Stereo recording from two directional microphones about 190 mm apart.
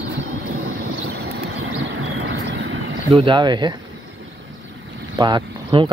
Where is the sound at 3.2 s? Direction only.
25° right (ahead or behind).